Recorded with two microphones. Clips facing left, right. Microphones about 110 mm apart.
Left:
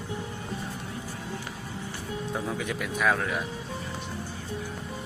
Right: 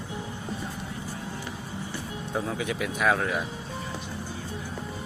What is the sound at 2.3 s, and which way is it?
Speech, centre (ahead or behind).